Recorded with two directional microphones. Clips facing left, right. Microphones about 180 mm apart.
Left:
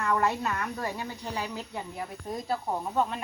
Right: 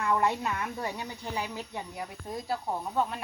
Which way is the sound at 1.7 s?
Centre (ahead or behind).